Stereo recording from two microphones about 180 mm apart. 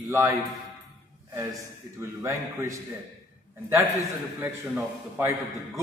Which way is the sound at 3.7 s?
15° right (ahead or behind).